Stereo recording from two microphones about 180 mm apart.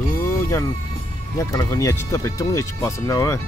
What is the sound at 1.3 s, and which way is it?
Speech, 20° left (ahead or behind).